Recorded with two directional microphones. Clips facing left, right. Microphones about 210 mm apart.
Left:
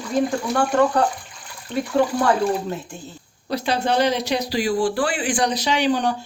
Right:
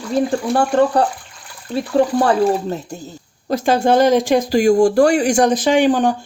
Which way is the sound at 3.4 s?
45° right (ahead or behind).